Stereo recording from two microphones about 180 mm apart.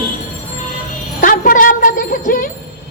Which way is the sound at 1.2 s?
50° left (ahead or behind).